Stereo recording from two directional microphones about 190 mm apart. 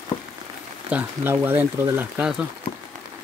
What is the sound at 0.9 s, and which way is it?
Speech, 10° right (ahead or behind).